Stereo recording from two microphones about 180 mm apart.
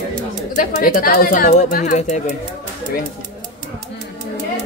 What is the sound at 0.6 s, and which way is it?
Speech, 50° left (ahead or behind).